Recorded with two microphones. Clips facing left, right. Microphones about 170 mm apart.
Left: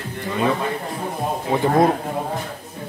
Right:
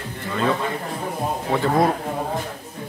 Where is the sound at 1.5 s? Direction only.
20° left (ahead or behind).